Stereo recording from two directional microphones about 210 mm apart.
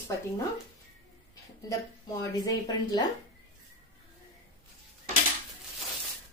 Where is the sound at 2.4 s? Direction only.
20° left (ahead or behind).